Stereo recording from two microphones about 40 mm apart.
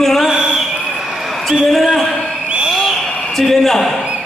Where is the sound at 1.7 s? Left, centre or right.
Centre.